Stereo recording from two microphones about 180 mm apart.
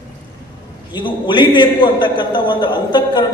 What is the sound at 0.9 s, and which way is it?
A man's voice, 25° left (ahead or behind).